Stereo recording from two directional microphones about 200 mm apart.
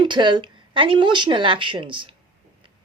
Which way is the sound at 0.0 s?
25° right (ahead or behind).